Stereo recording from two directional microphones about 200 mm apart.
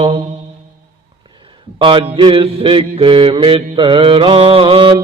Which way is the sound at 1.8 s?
25° right (ahead or behind).